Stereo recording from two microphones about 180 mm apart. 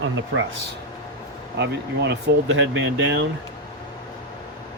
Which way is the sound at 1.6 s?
70° right (ahead or behind).